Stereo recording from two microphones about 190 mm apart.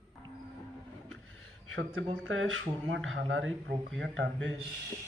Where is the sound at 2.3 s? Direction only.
90° right.